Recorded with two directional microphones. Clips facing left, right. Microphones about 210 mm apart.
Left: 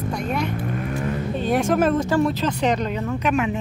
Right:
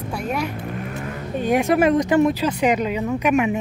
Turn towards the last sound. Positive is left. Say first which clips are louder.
# right 3 dB
turn(degrees=-15)  # may be behind; listen again after turning